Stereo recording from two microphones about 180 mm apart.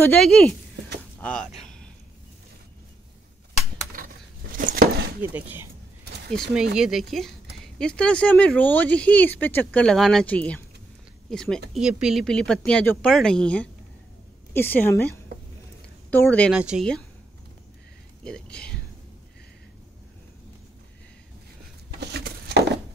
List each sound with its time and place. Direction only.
0.0 s speech: 5° left (ahead or behind)
1.6 s a sound: 5° left (ahead or behind)
3.9 s a sound: 50° right (ahead or behind)
5.2 s speech: 10° right (ahead or behind)
6.3 s speech: centre (ahead or behind)
16.1 s speech: 10° left (ahead or behind)
16.5 s speech: 5° right (ahead or behind)
18.2 s speech: 5° left (ahead or behind)
22.0 s a sound: 65° right (ahead or behind)